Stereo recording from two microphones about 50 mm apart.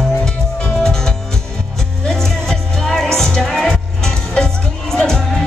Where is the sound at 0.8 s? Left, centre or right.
Centre.